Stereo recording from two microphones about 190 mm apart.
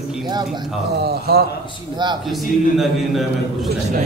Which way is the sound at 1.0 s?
55° right (ahead or behind).